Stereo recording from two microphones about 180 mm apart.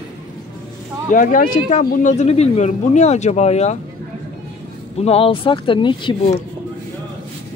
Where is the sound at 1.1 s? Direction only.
50° left (ahead or behind).